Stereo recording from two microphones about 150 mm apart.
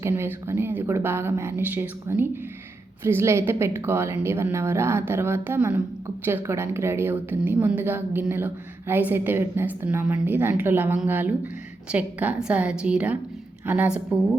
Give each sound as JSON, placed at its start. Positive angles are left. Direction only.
{"t": 0.0, "sound": "a woman's voice", "side_deg": -15}